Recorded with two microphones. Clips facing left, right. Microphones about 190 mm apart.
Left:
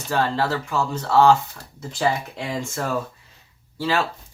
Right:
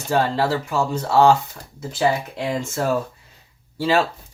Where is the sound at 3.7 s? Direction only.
15° right (ahead or behind).